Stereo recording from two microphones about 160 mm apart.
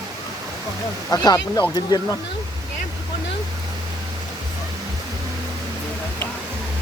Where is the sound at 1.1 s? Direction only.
25° left (ahead or behind).